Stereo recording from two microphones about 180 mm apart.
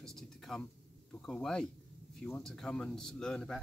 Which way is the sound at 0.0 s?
5° left (ahead or behind).